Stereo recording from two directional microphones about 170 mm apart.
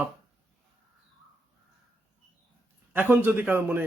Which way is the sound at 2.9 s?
10° right (ahead or behind).